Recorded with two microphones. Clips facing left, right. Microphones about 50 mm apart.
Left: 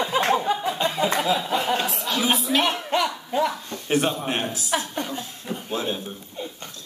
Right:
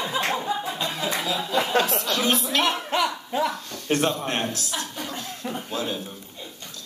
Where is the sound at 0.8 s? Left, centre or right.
Left.